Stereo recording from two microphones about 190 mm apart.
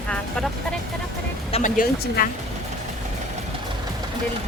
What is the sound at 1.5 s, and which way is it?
Speech, 45° left (ahead or behind).